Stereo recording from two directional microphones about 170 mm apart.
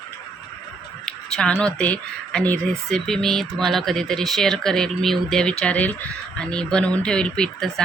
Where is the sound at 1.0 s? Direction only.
5° left (ahead or behind).